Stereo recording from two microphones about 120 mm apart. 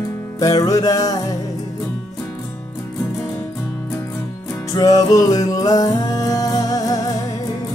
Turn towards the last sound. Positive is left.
turn(degrees=30)  # may be behind; listen again after turning